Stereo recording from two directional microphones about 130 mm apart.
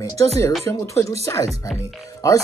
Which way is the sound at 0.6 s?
25° left (ahead or behind).